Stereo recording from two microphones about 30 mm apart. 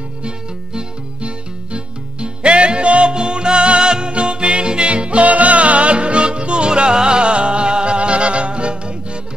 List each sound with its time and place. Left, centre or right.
1.2 s music: right